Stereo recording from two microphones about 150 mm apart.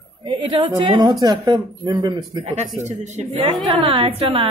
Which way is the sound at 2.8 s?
50° right (ahead or behind).